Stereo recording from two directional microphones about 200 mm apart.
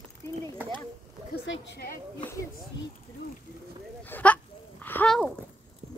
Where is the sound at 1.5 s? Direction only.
55° left (ahead or behind).